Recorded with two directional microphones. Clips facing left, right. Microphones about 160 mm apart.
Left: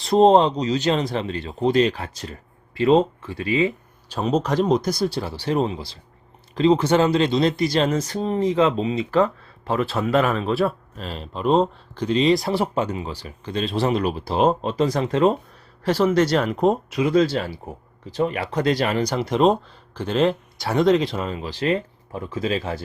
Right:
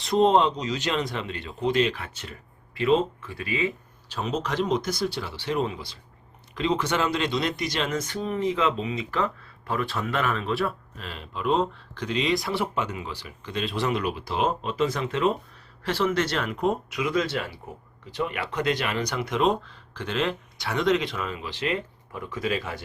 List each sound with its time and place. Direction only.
0.0 s speech: 35° left (ahead or behind)